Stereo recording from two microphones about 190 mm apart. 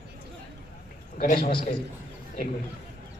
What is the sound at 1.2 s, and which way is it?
Speech, 50° left (ahead or behind).